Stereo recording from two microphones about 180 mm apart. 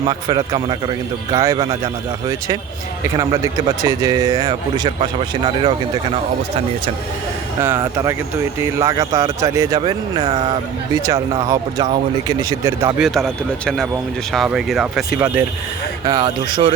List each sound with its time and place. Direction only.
0.1 s a man's voice: 25° right (ahead or behind)
3.0 s a man's voice: 15° right (ahead or behind)
7.8 s a man's voice: 15° right (ahead or behind)
13.0 s speech: centre (ahead or behind)
16.0 s a man's voice: 25° right (ahead or behind)